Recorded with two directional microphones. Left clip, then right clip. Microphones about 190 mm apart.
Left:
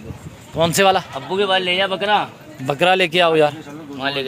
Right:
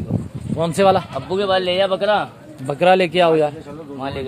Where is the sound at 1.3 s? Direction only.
55° right (ahead or behind).